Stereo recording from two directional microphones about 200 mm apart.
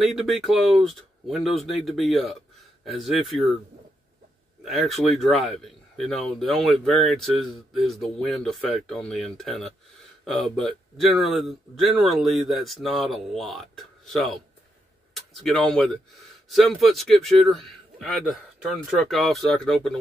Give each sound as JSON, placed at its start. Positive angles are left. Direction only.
{"t": 0.0, "sound": "speech", "side_deg": 0}
{"t": 4.6, "sound": "speech", "side_deg": 0}